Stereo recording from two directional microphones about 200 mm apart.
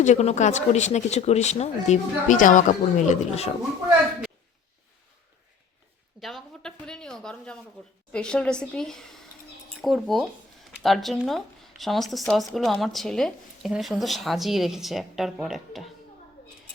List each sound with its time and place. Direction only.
0.0 s speech: 35° left (ahead or behind)
6.1 s speech: centre (ahead or behind)